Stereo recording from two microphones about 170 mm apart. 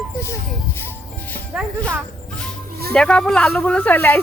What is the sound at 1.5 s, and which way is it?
Speech, 5° right (ahead or behind).